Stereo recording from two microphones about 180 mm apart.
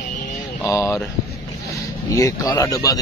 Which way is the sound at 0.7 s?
15° left (ahead or behind).